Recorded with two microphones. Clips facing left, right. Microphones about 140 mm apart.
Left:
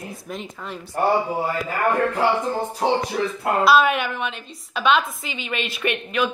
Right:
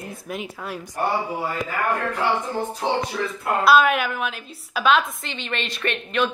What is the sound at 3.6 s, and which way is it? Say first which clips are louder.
A woman's voice: right 1 dB; centre (ahead or behind).